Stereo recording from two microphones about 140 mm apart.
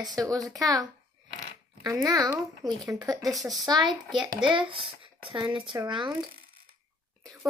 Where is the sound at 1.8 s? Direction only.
25° right (ahead or behind).